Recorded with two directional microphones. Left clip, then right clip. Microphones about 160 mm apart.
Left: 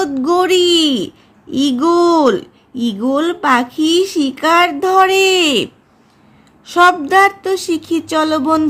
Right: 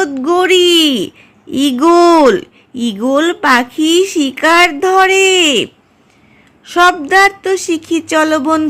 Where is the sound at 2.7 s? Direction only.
50° right (ahead or behind).